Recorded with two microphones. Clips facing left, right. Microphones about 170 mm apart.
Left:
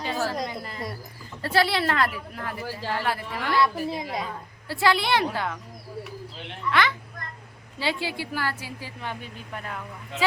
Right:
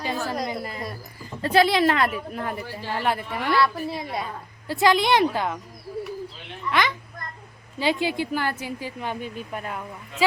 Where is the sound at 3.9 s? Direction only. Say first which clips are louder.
Even; 20° left (ahead or behind).